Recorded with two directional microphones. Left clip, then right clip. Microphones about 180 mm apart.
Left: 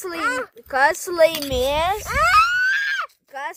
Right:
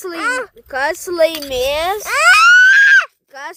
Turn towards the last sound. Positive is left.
turn(degrees=-30)  # may be behind; listen again after turning